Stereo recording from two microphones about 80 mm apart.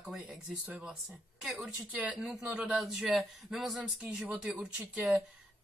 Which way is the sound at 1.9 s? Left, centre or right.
Centre.